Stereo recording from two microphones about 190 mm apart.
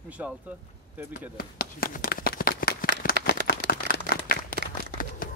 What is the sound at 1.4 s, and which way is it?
Shuffling cards, 50° left (ahead or behind).